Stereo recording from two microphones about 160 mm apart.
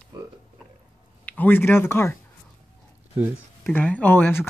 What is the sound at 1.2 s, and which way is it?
Speech, 10° left (ahead or behind).